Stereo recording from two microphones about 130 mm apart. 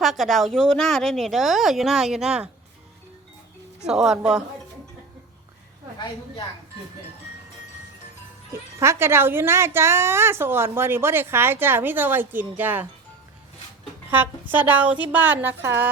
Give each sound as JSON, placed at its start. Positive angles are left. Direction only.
{"t": 0.0, "sound": "speech", "side_deg": 0}
{"t": 3.8, "sound": "speech", "side_deg": -5}
{"t": 8.8, "sound": "a woman's voice", "side_deg": -20}
{"t": 14.1, "sound": "a woman's voice", "side_deg": -15}